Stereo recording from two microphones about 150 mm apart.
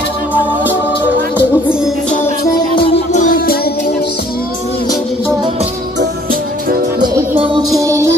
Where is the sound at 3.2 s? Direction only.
65° left (ahead or behind).